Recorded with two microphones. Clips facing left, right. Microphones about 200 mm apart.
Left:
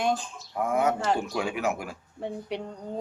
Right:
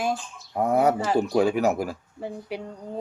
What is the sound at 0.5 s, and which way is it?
Speech, 35° right (ahead or behind).